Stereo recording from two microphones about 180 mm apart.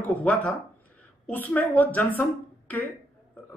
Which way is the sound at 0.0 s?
5° left (ahead or behind).